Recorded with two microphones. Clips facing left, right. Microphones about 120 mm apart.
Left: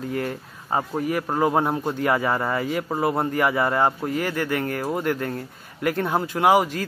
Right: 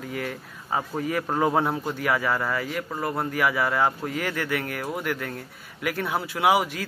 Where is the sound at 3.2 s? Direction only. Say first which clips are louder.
Right 1 dB; 20° left (ahead or behind).